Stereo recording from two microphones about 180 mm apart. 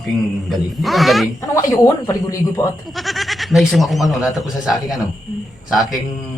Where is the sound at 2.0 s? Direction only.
15° left (ahead or behind).